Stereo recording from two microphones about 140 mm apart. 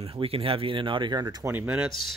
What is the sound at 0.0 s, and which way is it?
Speech, 40° right (ahead or behind).